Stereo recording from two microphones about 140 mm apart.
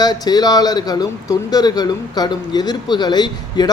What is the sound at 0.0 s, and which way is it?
Speech, 30° left (ahead or behind).